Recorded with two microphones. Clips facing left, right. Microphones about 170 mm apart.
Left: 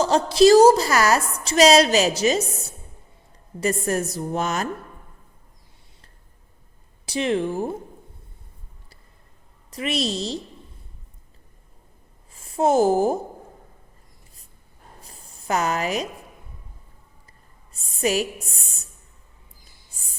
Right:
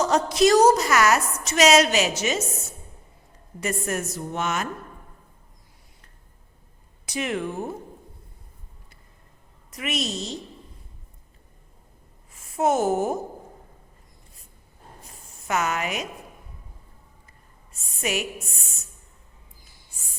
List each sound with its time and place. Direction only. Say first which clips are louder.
0.0 s a woman's voice: left 4 dB; 30° left (ahead or behind)
7.0 s speech: left 5 dB; 30° left (ahead or behind)
9.6 s a woman's voice: left 4 dB; 30° left (ahead or behind)
12.3 s a woman's voice: left 3 dB; 30° left (ahead or behind)
15.0 s a sound: left 4 dB; 35° left (ahead or behind)
17.7 s a woman's voice: left 6 dB; 35° left (ahead or behind)